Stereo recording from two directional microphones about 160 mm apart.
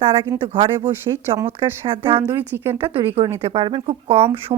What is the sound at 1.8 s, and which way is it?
Speech, 35° right (ahead or behind).